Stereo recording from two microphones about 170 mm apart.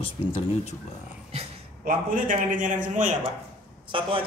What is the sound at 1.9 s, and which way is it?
A man's voice, 55° right (ahead or behind).